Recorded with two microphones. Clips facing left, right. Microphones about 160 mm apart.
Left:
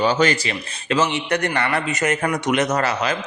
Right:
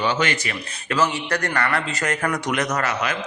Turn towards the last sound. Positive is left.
turn(degrees=30)  # may be behind; listen again after turning